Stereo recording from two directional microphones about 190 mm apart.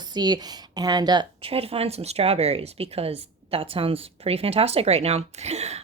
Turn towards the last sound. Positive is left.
turn(degrees=-35)  # may be behind; listen again after turning